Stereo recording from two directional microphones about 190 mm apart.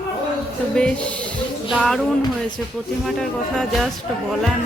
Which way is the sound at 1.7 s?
Centre (ahead or behind).